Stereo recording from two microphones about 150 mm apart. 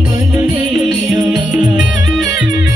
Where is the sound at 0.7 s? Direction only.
Centre (ahead or behind).